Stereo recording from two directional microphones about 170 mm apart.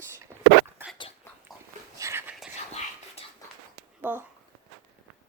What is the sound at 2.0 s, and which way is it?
Whispering, 15° right (ahead or behind).